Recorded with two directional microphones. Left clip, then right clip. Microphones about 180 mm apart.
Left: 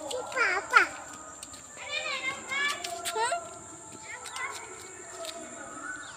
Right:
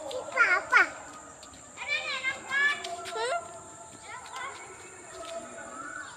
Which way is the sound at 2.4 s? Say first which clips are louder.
Right 6 dB; 20° left (ahead or behind).